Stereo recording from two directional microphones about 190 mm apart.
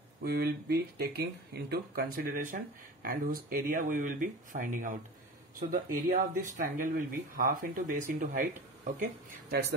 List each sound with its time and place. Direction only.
0.2 s speech: 55° right (ahead or behind)